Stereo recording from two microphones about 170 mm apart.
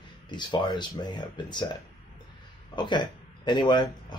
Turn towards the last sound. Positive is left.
turn(degrees=25)  # may be behind; listen again after turning